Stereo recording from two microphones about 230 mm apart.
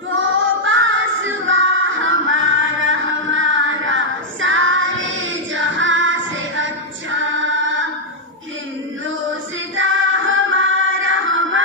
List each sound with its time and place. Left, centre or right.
0.1 s music: right
9.8 s music: right